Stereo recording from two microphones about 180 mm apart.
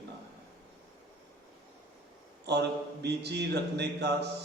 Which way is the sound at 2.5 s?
70° right (ahead or behind).